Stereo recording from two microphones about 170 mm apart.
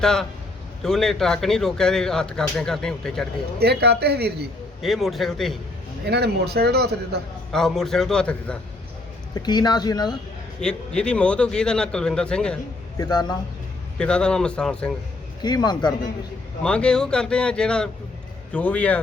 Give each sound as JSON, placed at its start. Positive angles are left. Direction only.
{"t": 0.0, "sound": "speech", "side_deg": 5}
{"t": 3.6, "sound": "a man's voice", "side_deg": -70}
{"t": 4.8, "sound": "speech", "side_deg": 0}
{"t": 6.1, "sound": "a man's voice", "side_deg": -75}
{"t": 7.5, "sound": "speech", "side_deg": 0}
{"t": 9.3, "sound": "speech", "side_deg": 25}
{"t": 10.6, "sound": "speech", "side_deg": 5}
{"t": 13.0, "sound": "speech", "side_deg": 25}
{"t": 14.0, "sound": "speech", "side_deg": 5}
{"t": 15.4, "sound": "speech", "side_deg": 25}
{"t": 16.6, "sound": "speech", "side_deg": 5}